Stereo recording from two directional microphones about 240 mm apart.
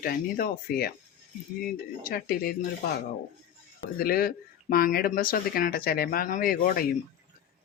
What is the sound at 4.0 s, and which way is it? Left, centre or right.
Speech, left.